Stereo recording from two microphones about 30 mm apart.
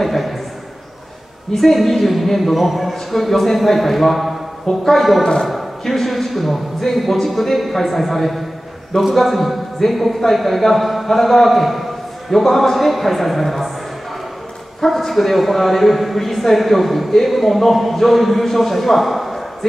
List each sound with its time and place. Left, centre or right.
0.0 s a sound: centre
1.5 s a man's voice: centre
4.6 s a woman's voice: centre
5.5 s a man's voice: centre
14.9 s a man's voice: centre